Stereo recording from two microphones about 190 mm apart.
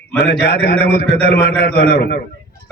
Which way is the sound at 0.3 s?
55° left (ahead or behind).